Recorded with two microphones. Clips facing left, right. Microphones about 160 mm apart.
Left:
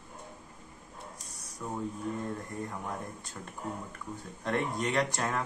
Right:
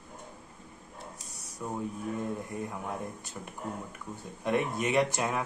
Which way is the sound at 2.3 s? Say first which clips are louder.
Right 2 dB; 5° right (ahead or behind).